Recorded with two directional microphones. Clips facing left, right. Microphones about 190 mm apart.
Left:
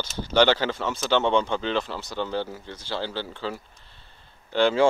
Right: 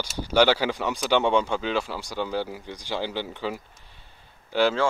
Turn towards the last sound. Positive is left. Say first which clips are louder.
# left 1 dB
turn(degrees=-10)  # may be behind; listen again after turning